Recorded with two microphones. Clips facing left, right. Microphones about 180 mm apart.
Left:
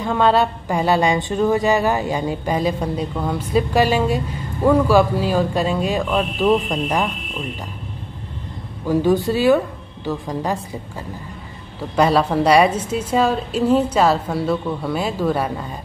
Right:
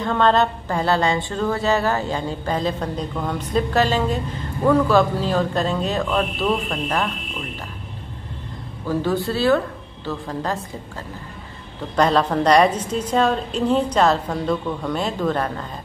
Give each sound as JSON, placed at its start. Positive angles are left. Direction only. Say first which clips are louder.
{"t": 0.0, "sound": "a woman's voice", "louder": "left 1 dB", "side_deg": 10}
{"t": 8.8, "sound": "a woman's voice", "louder": "left 5 dB", "side_deg": 15}
{"t": 11.9, "sound": "a woman's voice", "louder": "left 2 dB", "side_deg": 10}